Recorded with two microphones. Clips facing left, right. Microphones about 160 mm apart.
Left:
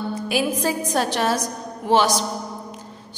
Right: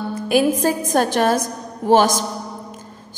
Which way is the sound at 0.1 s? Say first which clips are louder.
Right 8 dB; 50° right (ahead or behind).